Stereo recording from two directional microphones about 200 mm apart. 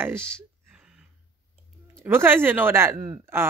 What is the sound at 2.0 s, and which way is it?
Speech, 10° right (ahead or behind).